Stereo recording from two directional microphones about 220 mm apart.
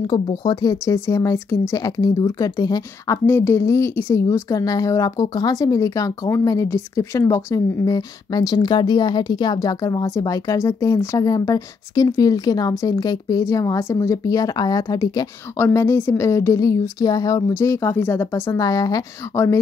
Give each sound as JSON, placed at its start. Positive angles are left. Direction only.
{"t": 0.0, "sound": "speech", "side_deg": 20}